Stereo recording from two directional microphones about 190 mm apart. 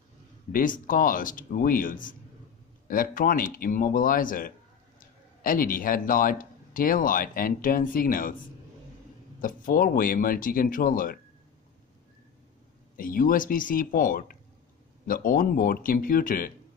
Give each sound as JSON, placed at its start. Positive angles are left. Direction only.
{"t": 0.5, "sound": "speech", "side_deg": 45}
{"t": 9.4, "sound": "speech", "side_deg": 45}
{"t": 12.9, "sound": "speech", "side_deg": 50}